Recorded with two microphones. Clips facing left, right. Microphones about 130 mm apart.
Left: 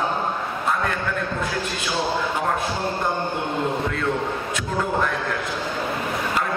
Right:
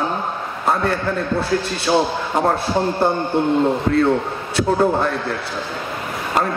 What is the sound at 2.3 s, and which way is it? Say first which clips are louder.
A man's voice: right 6 dB; 35° right (ahead or behind).